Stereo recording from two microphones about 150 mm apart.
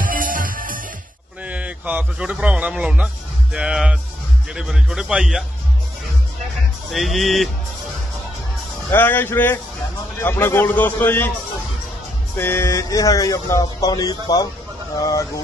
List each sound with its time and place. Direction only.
0.0 s music: 65° right (ahead or behind)
1.4 s speech: 10° right (ahead or behind)
6.9 s speech: centre (ahead or behind)
8.9 s a man's voice: 15° left (ahead or behind)
12.4 s speech: 15° left (ahead or behind)